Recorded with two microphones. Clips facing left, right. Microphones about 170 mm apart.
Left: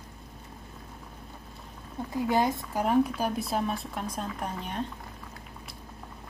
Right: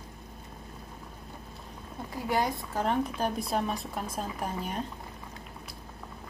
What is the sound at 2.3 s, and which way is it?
Speech, 20° left (ahead or behind).